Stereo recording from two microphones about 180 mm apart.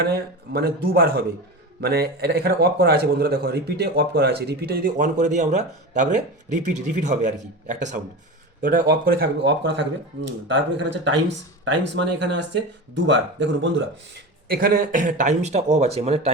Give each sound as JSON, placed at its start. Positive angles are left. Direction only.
{"t": 0.0, "sound": "a man's voice", "side_deg": -60}
{"t": 8.9, "sound": "speech", "side_deg": -60}
{"t": 13.1, "sound": "speech", "side_deg": -90}
{"t": 14.4, "sound": "speech", "side_deg": -55}